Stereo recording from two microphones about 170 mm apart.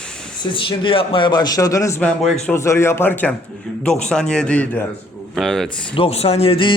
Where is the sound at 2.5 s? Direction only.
15° left (ahead or behind).